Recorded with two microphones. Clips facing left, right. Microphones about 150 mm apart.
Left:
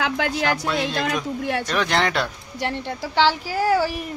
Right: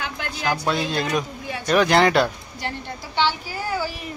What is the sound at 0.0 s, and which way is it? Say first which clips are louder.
Music: left 7 dB; 90° left.